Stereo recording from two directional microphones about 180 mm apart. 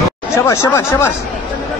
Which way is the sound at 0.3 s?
15° left (ahead or behind).